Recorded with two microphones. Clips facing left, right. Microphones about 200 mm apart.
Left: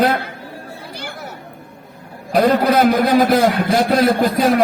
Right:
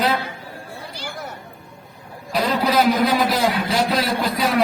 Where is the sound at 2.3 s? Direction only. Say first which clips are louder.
Left 6 dB; 55° left (ahead or behind).